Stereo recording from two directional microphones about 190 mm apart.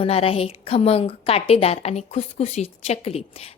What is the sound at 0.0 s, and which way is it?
A woman's voice, 30° left (ahead or behind).